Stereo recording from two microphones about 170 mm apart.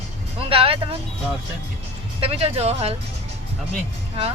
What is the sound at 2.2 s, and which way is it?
Speech, 35° right (ahead or behind).